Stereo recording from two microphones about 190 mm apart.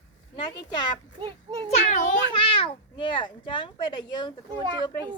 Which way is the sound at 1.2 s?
20° right (ahead or behind).